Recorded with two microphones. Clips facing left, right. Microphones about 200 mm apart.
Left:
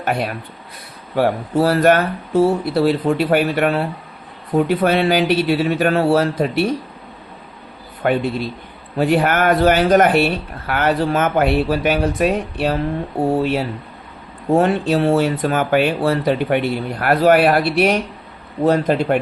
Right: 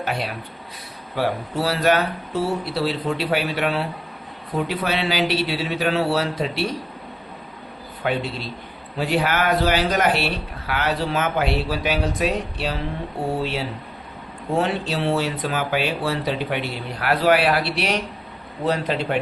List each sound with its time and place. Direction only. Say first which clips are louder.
0.0 s speech: left 5 dB; 50° left (ahead or behind)
8.0 s speech: left 6 dB; 50° left (ahead or behind)